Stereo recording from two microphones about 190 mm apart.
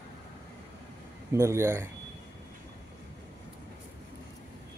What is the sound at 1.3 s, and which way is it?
Speech, 15° right (ahead or behind).